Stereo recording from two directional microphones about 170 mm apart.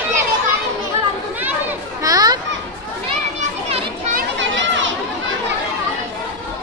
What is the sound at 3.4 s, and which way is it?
Children playing, 35° right (ahead or behind).